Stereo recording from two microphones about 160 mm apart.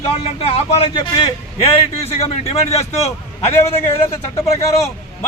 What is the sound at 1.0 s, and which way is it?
A man's voice, 30° left (ahead or behind).